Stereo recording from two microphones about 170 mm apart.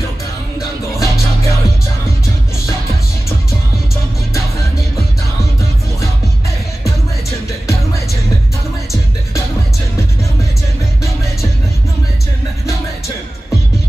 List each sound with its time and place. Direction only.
1.0 s music: 15° left (ahead or behind)
6.8 s music: 20° left (ahead or behind)